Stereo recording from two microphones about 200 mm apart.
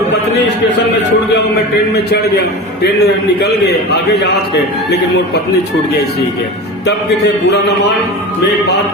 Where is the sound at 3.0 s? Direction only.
55° left (ahead or behind).